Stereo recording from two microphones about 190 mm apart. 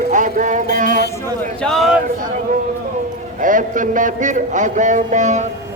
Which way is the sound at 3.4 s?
45° right (ahead or behind).